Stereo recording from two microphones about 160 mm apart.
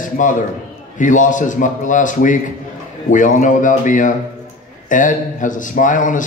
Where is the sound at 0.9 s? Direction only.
50° left (ahead or behind).